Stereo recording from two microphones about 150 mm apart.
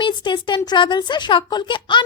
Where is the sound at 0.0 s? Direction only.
30° left (ahead or behind).